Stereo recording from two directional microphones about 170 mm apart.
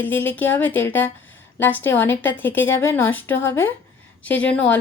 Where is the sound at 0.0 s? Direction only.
10° left (ahead or behind).